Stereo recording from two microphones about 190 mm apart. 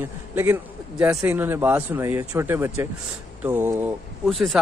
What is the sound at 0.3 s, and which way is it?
Speech, 10° right (ahead or behind).